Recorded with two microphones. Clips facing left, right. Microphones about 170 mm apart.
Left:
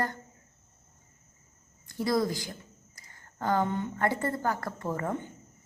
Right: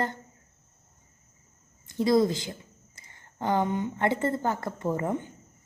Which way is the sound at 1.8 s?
20° right (ahead or behind).